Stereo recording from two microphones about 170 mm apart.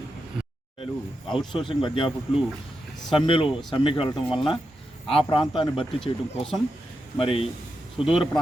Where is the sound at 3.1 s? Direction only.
30° left (ahead or behind).